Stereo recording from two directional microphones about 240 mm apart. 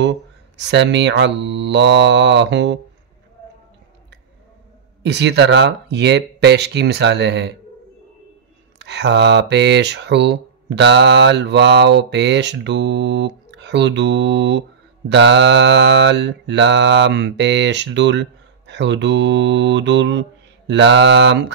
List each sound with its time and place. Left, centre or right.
0.6 s mantra: right
5.0 s mantra: right
8.7 s mantra: right